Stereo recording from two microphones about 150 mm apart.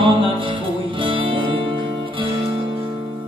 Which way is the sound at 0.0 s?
35° right (ahead or behind).